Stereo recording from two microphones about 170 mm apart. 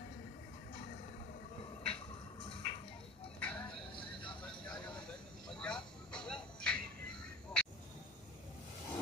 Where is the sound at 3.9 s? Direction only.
30° left (ahead or behind).